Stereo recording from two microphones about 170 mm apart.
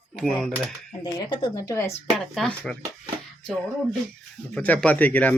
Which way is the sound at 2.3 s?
5° left (ahead or behind).